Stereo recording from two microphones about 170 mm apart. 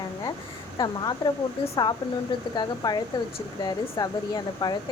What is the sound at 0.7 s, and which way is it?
Speech, 25° left (ahead or behind).